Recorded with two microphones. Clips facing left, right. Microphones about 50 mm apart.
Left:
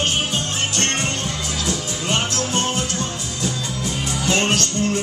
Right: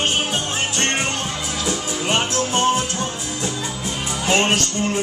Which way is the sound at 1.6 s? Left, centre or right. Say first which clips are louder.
Right 3 dB; centre.